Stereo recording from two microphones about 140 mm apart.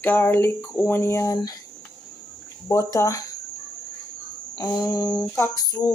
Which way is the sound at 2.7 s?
20° left (ahead or behind).